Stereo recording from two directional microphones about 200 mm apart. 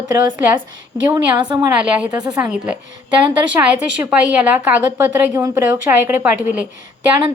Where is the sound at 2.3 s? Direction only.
5° right (ahead or behind).